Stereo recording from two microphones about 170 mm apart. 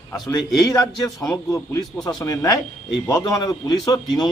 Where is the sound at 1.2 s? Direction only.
5° left (ahead or behind).